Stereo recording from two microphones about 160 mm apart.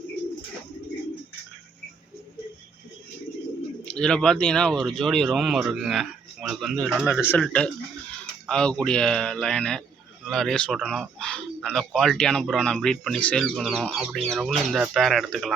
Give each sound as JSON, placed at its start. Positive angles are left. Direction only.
{"t": 3.8, "sound": "speech", "side_deg": 5}
{"t": 7.3, "sound": "speech", "side_deg": 5}